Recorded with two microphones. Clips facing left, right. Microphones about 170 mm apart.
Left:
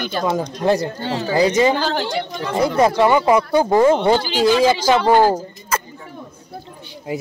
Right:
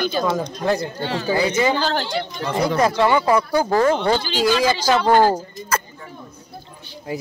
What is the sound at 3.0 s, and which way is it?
Speech, 15° left (ahead or behind).